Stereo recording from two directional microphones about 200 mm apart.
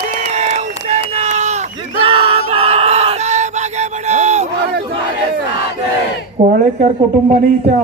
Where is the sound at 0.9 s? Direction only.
35° right (ahead or behind).